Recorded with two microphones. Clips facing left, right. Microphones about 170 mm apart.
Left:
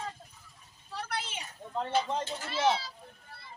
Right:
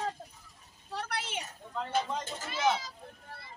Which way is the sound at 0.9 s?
70° right (ahead or behind).